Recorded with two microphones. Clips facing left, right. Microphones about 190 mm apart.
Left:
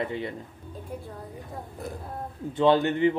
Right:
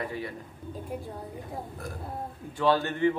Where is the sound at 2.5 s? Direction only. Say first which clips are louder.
Left 4 dB; 20° left (ahead or behind).